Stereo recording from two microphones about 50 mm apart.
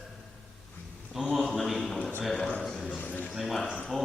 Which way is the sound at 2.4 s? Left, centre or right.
Left.